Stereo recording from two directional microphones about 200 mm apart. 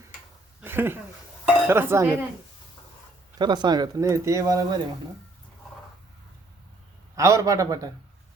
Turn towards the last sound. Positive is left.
turn(degrees=-15)  # may be behind; listen again after turning